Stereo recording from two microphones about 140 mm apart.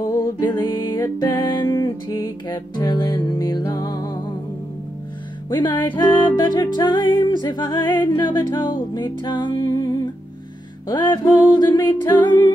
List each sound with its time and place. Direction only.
0.0 s music: 25° left (ahead or behind)
5.5 s music: 35° left (ahead or behind)